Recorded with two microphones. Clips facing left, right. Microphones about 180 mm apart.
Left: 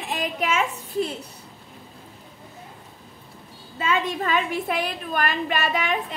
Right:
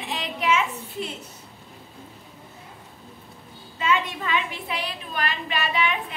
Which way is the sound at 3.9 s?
45° left (ahead or behind).